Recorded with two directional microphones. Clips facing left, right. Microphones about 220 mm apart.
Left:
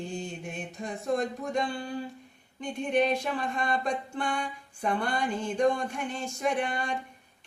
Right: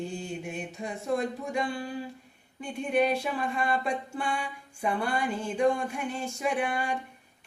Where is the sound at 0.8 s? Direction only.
10° right (ahead or behind).